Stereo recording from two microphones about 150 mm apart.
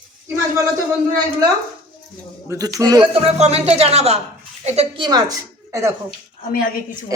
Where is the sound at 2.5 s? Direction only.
25° right (ahead or behind).